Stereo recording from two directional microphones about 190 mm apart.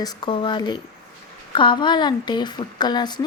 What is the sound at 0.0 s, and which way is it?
Speech, 25° left (ahead or behind).